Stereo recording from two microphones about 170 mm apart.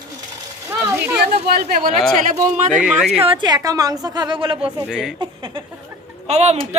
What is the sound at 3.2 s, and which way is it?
A woman's voice, 25° right (ahead or behind).